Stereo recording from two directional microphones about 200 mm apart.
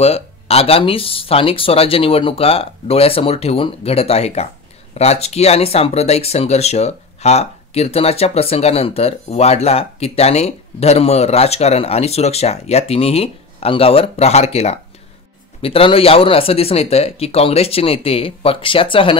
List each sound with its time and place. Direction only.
0.0 s speech: 30° left (ahead or behind)